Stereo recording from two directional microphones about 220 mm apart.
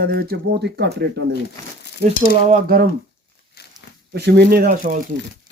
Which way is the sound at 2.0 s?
35° right (ahead or behind).